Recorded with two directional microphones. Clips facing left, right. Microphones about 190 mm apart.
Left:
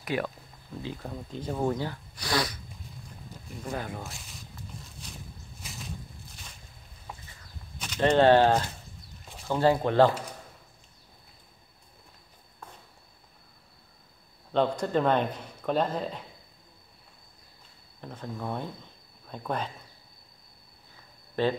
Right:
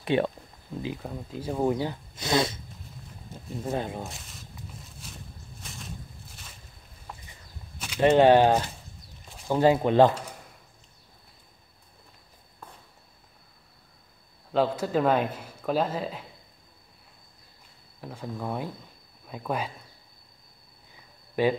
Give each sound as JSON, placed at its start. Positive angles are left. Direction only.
{"t": 0.0, "sound": "speech", "side_deg": -25}
{"t": 0.8, "sound": "speech", "side_deg": -5}
{"t": 3.6, "sound": "speech", "side_deg": -25}
{"t": 4.1, "sound": "a sound", "side_deg": 0}
{"t": 5.6, "sound": "a sound", "side_deg": 0}
{"t": 7.8, "sound": "speech", "side_deg": -5}
{"t": 14.5, "sound": "speech", "side_deg": -5}
{"t": 18.0, "sound": "speech", "side_deg": -5}
{"t": 21.4, "sound": "speech", "side_deg": -10}